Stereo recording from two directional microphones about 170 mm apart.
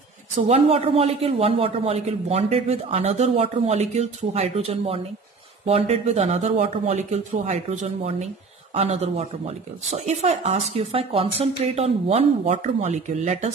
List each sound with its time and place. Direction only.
0.5 s a man's voice: 35° right (ahead or behind)